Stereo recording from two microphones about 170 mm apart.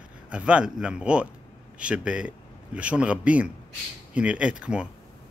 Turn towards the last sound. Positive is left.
turn(degrees=-5)  # may be behind; listen again after turning